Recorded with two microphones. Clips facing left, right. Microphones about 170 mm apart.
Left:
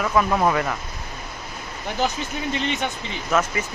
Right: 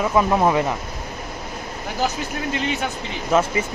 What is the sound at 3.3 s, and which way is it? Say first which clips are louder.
Speech: right 3 dB; 30° right (ahead or behind).